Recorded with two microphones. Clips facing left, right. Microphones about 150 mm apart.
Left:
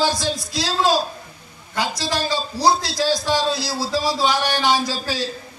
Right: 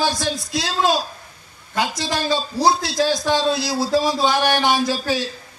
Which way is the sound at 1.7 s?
20° right (ahead or behind).